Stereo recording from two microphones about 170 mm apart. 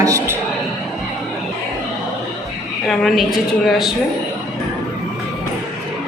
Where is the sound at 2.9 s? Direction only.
Centre (ahead or behind).